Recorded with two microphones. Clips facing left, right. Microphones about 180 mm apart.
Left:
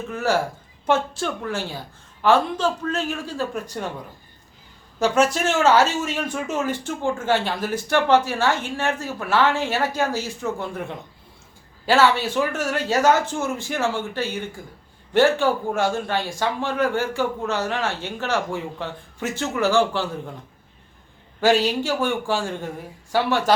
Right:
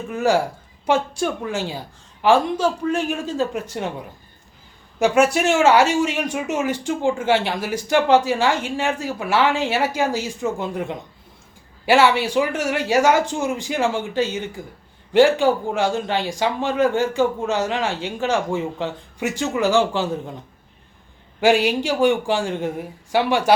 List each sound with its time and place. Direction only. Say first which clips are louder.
0.1 s speech: right 4 dB; 15° right (ahead or behind)
4.9 s speech: right 3 dB; 10° right (ahead or behind)
21.4 s speech: right 2 dB; 10° right (ahead or behind)